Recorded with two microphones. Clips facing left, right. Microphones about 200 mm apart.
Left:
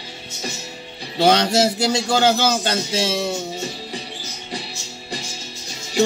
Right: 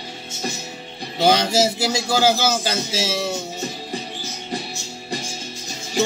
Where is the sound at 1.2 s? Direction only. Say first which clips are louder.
Left 1 dB; 10° right (ahead or behind).